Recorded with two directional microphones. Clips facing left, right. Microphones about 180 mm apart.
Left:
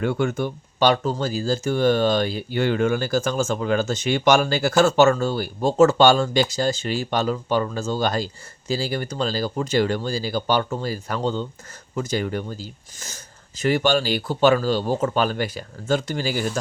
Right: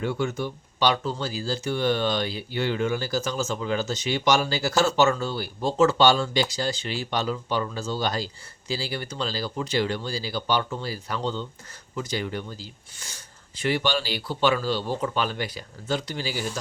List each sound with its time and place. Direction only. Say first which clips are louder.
0.0 s speech: left 4 dB; 55° left (ahead or behind)